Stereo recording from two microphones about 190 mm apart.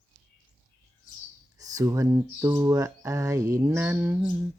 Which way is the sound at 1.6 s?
20° right (ahead or behind).